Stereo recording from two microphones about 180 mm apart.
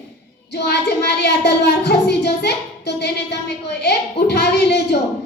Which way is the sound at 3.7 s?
70° left (ahead or behind).